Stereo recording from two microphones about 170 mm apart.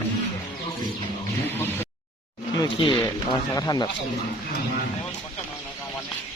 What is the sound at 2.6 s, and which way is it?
Speech, 30° left (ahead or behind).